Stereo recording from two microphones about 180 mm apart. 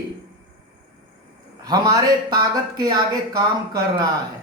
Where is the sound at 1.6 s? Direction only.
20° right (ahead or behind).